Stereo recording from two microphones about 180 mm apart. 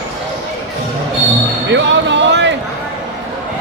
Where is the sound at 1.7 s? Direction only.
80° right.